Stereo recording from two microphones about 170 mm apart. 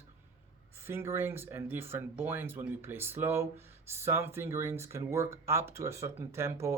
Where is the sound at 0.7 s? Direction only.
15° right (ahead or behind).